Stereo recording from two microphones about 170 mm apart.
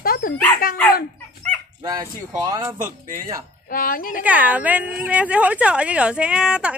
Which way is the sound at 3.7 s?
55° left (ahead or behind).